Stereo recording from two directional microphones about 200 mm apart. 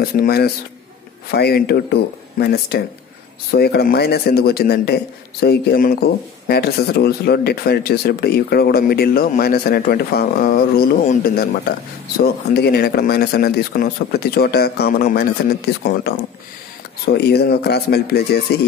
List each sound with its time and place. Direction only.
0.0 s speech: 50° left (ahead or behind)